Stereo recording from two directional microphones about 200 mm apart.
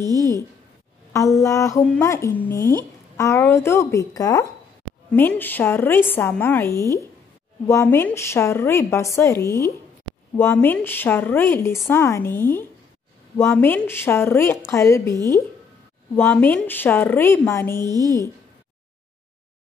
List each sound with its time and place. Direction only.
0.0 s a woman's voice: 20° right (ahead or behind)
1.1 s a woman's voice: 15° left (ahead or behind)
16.2 s a woman's voice: 10° left (ahead or behind)
17.8 s a woman's voice: 20° right (ahead or behind)